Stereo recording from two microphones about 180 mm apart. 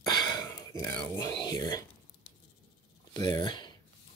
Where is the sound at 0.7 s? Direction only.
10° left (ahead or behind).